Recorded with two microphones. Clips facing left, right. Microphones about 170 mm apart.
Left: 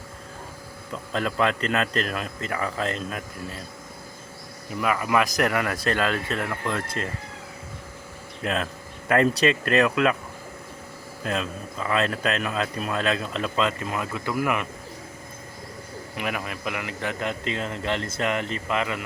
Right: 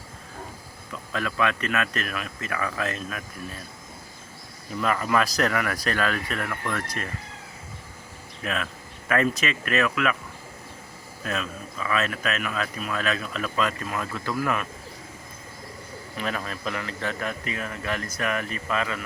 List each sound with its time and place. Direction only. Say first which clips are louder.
1.1 s a man's voice: left 2 dB; 30° left (ahead or behind)
4.8 s a man's voice: left 1 dB; 10° left (ahead or behind)
8.4 s speech: left 3 dB; 30° left (ahead or behind)
11.2 s a man's voice: left 2 dB; 30° left (ahead or behind)
16.1 s a man's voice: even; 15° left (ahead or behind)